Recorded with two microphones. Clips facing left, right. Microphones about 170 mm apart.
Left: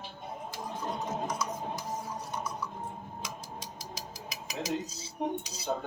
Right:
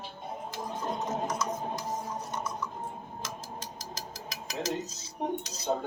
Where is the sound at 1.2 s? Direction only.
10° left (ahead or behind).